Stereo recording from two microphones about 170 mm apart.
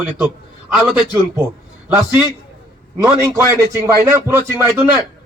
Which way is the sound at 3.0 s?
15° right (ahead or behind).